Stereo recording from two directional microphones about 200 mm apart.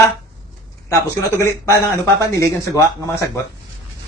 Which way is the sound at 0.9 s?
15° left (ahead or behind).